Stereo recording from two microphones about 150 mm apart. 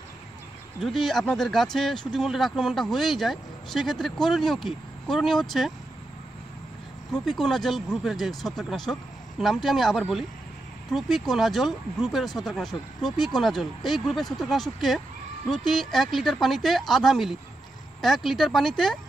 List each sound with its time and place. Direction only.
0.7 s speech: centre (ahead or behind)
7.1 s speech: centre (ahead or behind)